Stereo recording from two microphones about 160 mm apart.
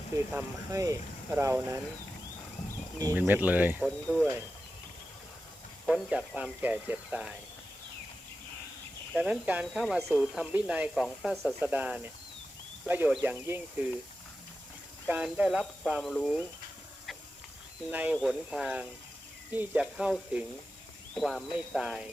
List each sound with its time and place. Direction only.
0.3 s speech: 20° right (ahead or behind)
3.0 s speech: 15° right (ahead or behind)
3.8 s speech: 5° left (ahead or behind)
5.8 s speech: 5° right (ahead or behind)
9.1 s speech: 5° right (ahead or behind)
15.0 s speech: 10° right (ahead or behind)
17.9 s speech: 10° right (ahead or behind)